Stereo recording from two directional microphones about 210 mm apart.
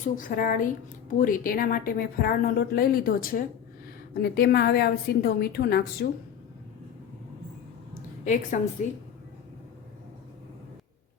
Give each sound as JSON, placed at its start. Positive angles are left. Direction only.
{"t": 0.0, "sound": "a woman's voice", "side_deg": 40}
{"t": 8.2, "sound": "a woman's voice", "side_deg": 35}